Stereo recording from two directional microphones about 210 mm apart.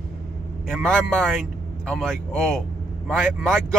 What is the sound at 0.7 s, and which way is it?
Speech, 5° left (ahead or behind).